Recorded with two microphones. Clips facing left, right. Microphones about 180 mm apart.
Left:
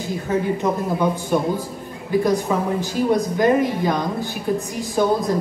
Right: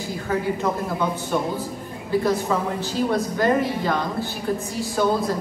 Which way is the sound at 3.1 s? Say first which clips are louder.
Left 4 dB; 15° left (ahead or behind).